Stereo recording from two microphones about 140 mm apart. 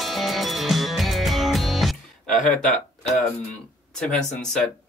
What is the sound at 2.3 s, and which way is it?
Speech, 60° left (ahead or behind).